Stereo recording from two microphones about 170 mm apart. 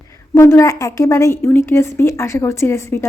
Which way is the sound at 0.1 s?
15° left (ahead or behind).